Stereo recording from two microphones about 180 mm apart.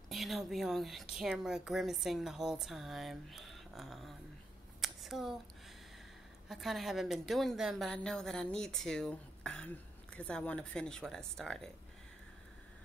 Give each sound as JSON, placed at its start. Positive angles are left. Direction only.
{"t": 0.1, "sound": "a woman's voice", "side_deg": 0}
{"t": 4.8, "sound": "a sound", "side_deg": 0}
{"t": 6.5, "sound": "a woman's voice", "side_deg": 0}